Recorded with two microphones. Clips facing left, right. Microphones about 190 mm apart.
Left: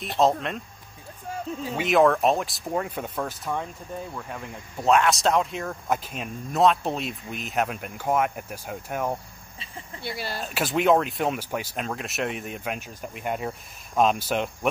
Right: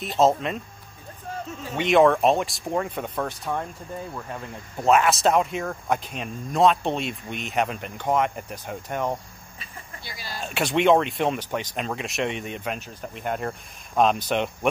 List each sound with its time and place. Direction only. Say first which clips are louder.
0.0 s speech: right 2 dB; centre (ahead or behind)
1.6 s speech: right 2 dB; 5° left (ahead or behind)
4.8 s speech: right 1 dB; 5° right (ahead or behind)
10.0 s speech: left 6 dB; 60° left (ahead or behind)
10.4 s speech: right 3 dB; centre (ahead or behind)